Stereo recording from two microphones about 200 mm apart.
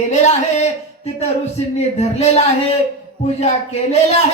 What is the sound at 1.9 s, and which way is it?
Speech, 35° left (ahead or behind).